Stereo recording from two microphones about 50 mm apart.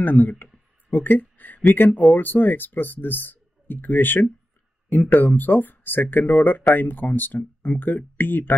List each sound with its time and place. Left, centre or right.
0.0 s speech: left
0.8 s a sound: left
2.0 s speech: left